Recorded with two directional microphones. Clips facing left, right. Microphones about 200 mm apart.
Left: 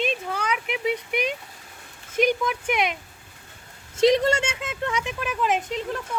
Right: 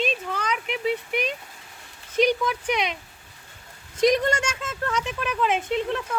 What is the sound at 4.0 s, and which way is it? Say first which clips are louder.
Speech: left 2 dB; 25° left (ahead or behind).